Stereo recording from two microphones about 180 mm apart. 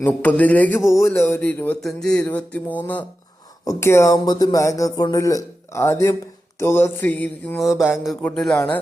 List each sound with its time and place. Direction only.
0.0 s a man's voice: 10° left (ahead or behind)
7.8 s speech: 5° right (ahead or behind)